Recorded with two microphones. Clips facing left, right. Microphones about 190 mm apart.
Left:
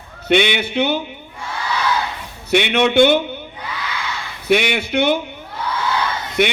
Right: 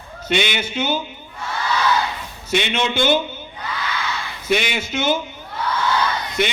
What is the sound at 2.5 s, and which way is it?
Speech, 65° left (ahead or behind).